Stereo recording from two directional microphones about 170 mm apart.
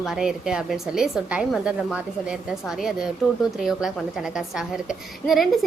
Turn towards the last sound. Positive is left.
turn(degrees=0)  # may be behind; listen again after turning